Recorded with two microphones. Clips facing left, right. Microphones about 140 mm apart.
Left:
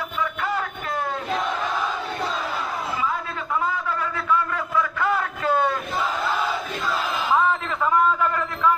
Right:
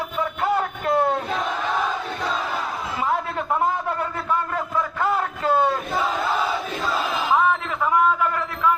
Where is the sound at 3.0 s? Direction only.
55° right (ahead or behind).